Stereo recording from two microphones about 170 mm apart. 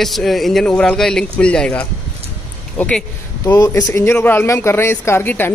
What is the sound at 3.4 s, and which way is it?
Speech, 20° left (ahead or behind).